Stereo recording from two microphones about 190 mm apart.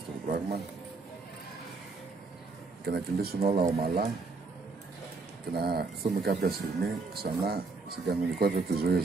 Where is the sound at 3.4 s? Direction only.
30° right (ahead or behind).